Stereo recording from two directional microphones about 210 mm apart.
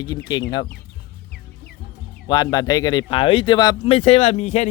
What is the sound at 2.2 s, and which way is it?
Speech, 20° left (ahead or behind).